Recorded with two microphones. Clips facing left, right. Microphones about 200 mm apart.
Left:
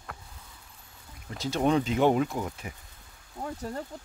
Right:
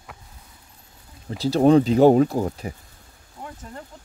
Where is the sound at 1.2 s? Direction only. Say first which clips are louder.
Right 9 dB; 35° right (ahead or behind).